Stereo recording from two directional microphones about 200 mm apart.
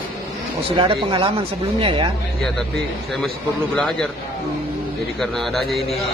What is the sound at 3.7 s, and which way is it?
Speech, 5° left (ahead or behind).